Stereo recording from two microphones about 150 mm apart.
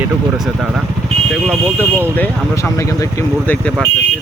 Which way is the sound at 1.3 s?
5° left (ahead or behind).